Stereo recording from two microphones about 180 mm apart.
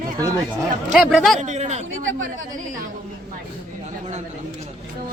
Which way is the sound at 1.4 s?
40° right (ahead or behind).